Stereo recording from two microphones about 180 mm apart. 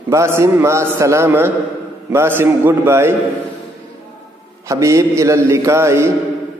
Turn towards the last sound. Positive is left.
turn(degrees=-15)  # may be behind; listen again after turning